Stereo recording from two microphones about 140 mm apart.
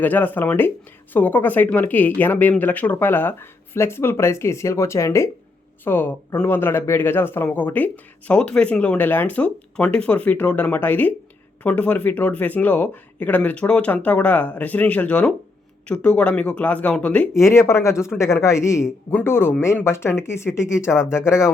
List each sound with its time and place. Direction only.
0.0 s speech: 15° left (ahead or behind)
17.3 s a man's voice: 20° left (ahead or behind)